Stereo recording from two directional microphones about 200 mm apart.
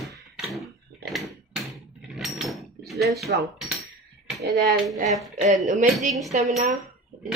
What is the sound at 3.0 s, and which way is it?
Speech, centre (ahead or behind).